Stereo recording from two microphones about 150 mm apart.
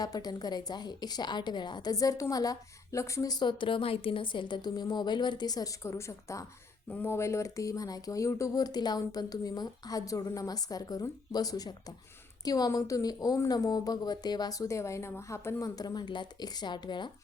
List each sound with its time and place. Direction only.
0.0 s a woman's voice: 25° left (ahead or behind)